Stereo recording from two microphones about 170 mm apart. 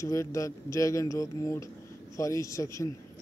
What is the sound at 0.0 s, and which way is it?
Speech, 20° left (ahead or behind).